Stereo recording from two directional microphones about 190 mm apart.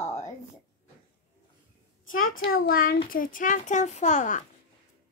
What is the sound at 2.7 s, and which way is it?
Speech, 50° left (ahead or behind).